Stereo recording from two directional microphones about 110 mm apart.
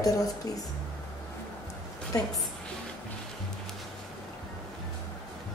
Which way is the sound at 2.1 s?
30° left (ahead or behind).